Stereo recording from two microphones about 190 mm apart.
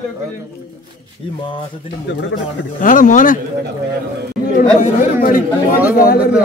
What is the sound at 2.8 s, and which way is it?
Speech, 45° left (ahead or behind).